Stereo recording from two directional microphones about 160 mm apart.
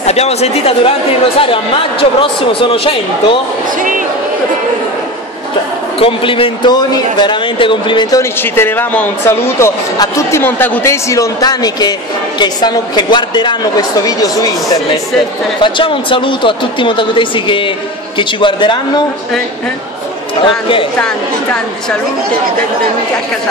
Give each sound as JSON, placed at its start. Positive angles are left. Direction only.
{"t": 0.0, "sound": "a man's voice", "side_deg": 40}
{"t": 5.9, "sound": "a man's voice", "side_deg": 35}
{"t": 8.2, "sound": "a woman's voice", "side_deg": 15}
{"t": 15.6, "sound": "a man's voice", "side_deg": 30}
{"t": 20.4, "sound": "a man's voice", "side_deg": 35}